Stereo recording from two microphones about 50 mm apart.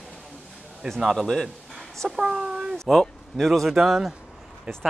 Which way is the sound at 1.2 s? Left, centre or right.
Centre.